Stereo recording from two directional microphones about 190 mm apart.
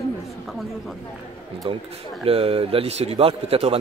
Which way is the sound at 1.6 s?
25° right (ahead or behind).